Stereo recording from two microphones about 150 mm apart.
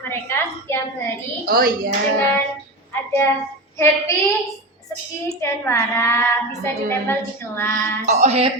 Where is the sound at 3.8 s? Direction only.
20° left (ahead or behind).